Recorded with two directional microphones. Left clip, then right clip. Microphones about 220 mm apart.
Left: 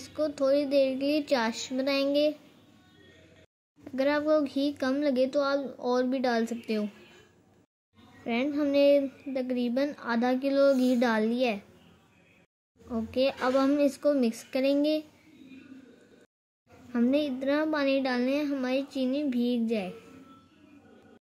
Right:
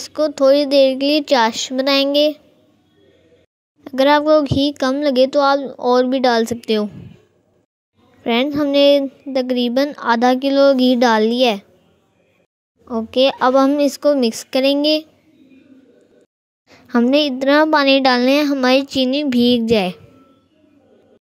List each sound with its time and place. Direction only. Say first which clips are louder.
0.0 s a woman's voice: right 13 dB; 35° right (ahead or behind)
3.8 s a woman's voice: right 14 dB; 35° right (ahead or behind)
8.2 s a child's voice: right 12 dB; 40° right (ahead or behind)
12.8 s a woman's voice: right 12 dB; 35° right (ahead or behind)
16.6 s a woman's voice: right 12 dB; 40° right (ahead or behind)